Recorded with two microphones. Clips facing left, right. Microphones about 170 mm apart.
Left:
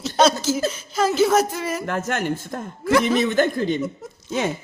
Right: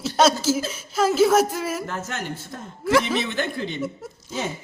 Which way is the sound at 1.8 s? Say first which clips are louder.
Left 6 dB; 55° left (ahead or behind).